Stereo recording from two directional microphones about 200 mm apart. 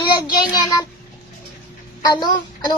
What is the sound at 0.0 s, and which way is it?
Child singing, 20° left (ahead or behind).